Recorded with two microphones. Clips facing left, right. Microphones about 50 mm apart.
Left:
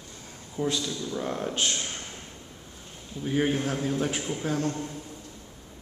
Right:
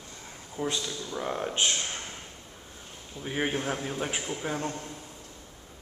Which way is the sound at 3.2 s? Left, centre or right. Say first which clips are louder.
Left 4 dB; centre.